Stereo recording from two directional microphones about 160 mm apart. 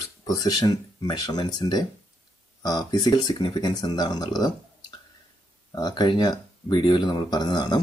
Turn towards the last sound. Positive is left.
turn(degrees=25)  # may be behind; listen again after turning